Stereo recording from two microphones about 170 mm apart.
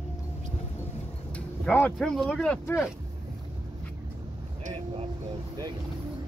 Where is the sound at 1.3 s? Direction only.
10° left (ahead or behind).